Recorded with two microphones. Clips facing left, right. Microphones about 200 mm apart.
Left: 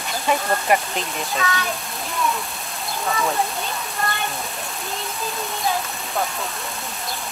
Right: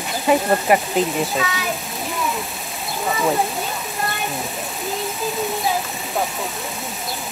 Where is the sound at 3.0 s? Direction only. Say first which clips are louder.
Right 3 dB; 20° right (ahead or behind).